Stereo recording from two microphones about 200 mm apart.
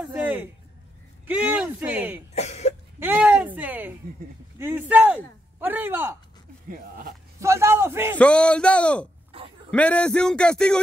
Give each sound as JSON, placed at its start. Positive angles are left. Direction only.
{"t": 0.0, "sound": "a sound", "side_deg": -5}
{"t": 1.2, "sound": "speech", "side_deg": -10}
{"t": 2.3, "sound": "cough", "side_deg": 35}
{"t": 3.0, "sound": "speech", "side_deg": -10}
{"t": 6.7, "sound": "speech", "side_deg": -45}
{"t": 7.3, "sound": "speech", "side_deg": -15}
{"t": 8.2, "sound": "speech", "side_deg": 5}
{"t": 9.3, "sound": "a sound", "side_deg": -25}
{"t": 9.7, "sound": "speech", "side_deg": 5}